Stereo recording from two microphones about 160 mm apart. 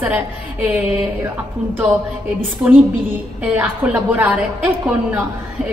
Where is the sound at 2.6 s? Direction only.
10° right (ahead or behind).